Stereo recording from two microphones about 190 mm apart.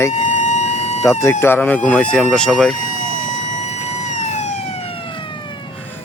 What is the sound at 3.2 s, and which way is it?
Emergency vehicle, 40° left (ahead or behind).